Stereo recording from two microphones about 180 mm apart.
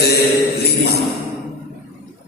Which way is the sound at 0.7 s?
60° left (ahead or behind).